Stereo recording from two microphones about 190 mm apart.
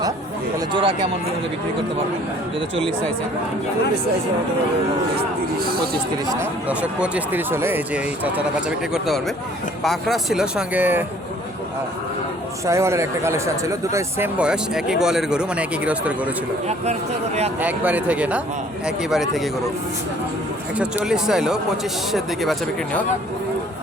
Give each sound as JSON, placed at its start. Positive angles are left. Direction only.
{"t": 0.7, "sound": "speech", "side_deg": -25}
{"t": 5.6, "sound": "speech", "side_deg": -50}
{"t": 6.2, "sound": "speech", "side_deg": -10}
{"t": 12.6, "sound": "speech", "side_deg": -15}
{"t": 16.6, "sound": "speech", "side_deg": -35}
{"t": 17.6, "sound": "speech", "side_deg": -10}
{"t": 20.7, "sound": "speech", "side_deg": -5}